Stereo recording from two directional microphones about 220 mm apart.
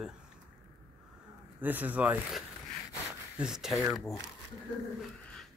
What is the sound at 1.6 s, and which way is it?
Speech, 10° right (ahead or behind).